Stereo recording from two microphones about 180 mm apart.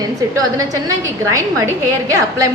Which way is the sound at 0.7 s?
20° right (ahead or behind).